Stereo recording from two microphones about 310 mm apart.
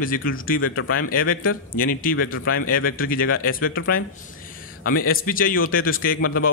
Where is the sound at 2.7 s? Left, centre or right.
Left.